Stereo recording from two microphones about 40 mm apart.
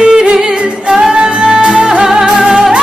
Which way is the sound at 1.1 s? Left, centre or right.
Right.